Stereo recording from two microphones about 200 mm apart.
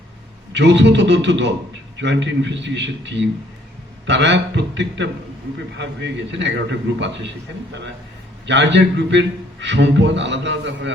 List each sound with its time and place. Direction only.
0.5 s a man's voice: 60° right (ahead or behind)
8.4 s a man's voice: 60° right (ahead or behind)